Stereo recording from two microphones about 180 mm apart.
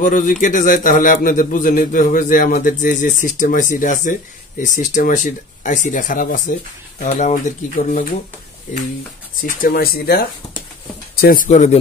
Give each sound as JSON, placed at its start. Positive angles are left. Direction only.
{"t": 0.0, "sound": "a man's voice", "side_deg": 45}
{"t": 9.4, "sound": "a man's voice", "side_deg": 55}